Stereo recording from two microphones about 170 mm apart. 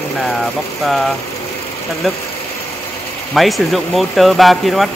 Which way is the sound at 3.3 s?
Centre (ahead or behind).